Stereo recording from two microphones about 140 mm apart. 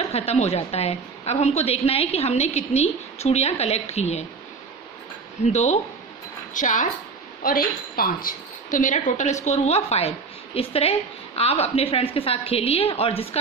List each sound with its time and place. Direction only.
0.1 s a woman's voice: 50° left (ahead or behind)
5.4 s a woman's voice: 50° left (ahead or behind)
7.4 s a woman's voice: 90° left; by 13.4 s 45° left (ahead or behind)